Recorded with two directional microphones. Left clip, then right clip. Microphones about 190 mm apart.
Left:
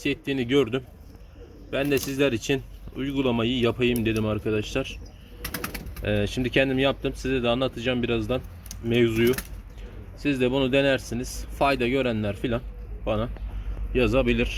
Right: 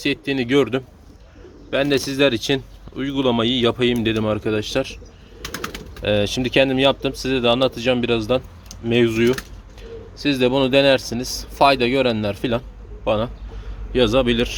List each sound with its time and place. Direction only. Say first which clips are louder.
0.0 s speech: right 5 dB; 5° right (ahead or behind)
5.4 s bird: right 4 dB; 50° left (ahead or behind)
6.0 s speech: right 7 dB; 15° right (ahead or behind)